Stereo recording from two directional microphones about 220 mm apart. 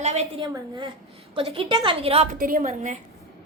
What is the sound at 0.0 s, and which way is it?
A woman's voice, 30° right (ahead or behind).